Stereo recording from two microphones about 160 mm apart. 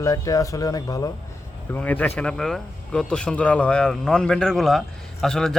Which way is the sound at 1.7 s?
10° left (ahead or behind).